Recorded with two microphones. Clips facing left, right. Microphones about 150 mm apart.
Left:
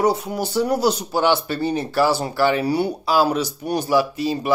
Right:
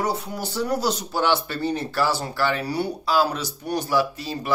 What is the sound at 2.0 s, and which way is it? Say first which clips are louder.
Speech: left 6 dB; 15° left (ahead or behind).